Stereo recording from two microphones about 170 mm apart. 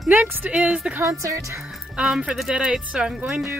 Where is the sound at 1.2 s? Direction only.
20° right (ahead or behind).